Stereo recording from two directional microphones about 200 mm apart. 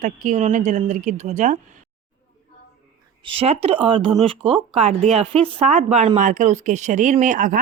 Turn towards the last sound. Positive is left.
turn(degrees=-40)  # may be behind; listen again after turning